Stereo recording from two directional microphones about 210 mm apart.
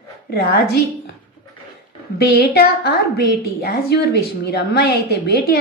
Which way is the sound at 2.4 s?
50° left (ahead or behind).